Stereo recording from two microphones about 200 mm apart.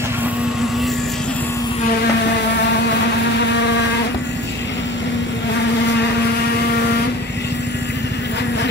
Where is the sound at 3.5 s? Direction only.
60° left (ahead or behind).